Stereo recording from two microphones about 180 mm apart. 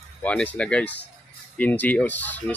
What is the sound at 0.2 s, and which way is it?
Speech, 10° left (ahead or behind).